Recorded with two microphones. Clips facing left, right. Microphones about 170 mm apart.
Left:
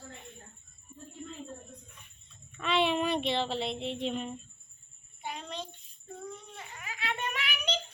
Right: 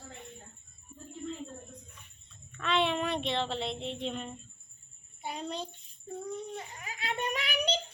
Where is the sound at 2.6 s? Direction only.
5° left (ahead or behind).